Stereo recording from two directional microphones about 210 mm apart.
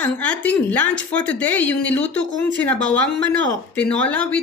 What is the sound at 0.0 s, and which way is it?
A woman's voice, 5° left (ahead or behind).